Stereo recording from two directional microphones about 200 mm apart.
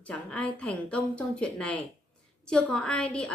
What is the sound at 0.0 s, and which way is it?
A woman's voice, 5° left (ahead or behind).